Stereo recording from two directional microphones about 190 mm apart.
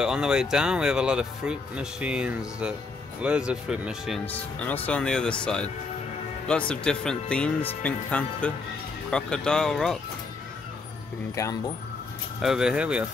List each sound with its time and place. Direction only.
0.0 s speech: 5° right (ahead or behind)
4.3 s speech: 10° left (ahead or behind)
6.7 s speech: 5° left (ahead or behind)
11.3 s speech: 15° left (ahead or behind)
12.4 s speech: 5° right (ahead or behind)